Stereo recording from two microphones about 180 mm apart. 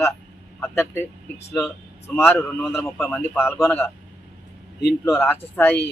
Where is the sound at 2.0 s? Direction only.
10° left (ahead or behind).